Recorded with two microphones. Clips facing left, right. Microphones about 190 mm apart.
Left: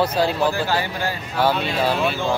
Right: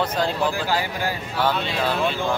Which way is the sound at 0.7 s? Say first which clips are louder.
Left 1 dB; 10° right (ahead or behind).